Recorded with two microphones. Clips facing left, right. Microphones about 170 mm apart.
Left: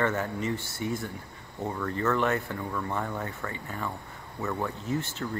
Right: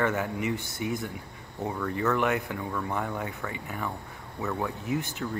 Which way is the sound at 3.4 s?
15° right (ahead or behind).